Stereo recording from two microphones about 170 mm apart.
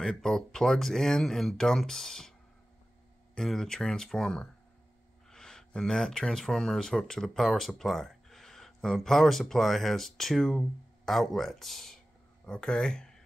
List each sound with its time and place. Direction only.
0.0 s speech: centre (ahead or behind)
3.3 s speech: 5° left (ahead or behind)